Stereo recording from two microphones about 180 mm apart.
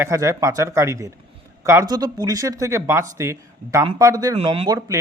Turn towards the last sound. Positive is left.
turn(degrees=-20)  # may be behind; listen again after turning